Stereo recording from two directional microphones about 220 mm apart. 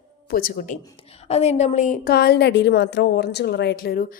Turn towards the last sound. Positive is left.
turn(degrees=45)  # may be behind; listen again after turning